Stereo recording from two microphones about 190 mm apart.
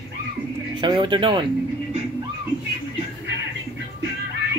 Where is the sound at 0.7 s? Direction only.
25° right (ahead or behind).